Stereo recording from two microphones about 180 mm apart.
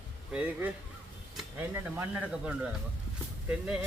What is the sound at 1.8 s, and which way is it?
Speech, 10° right (ahead or behind).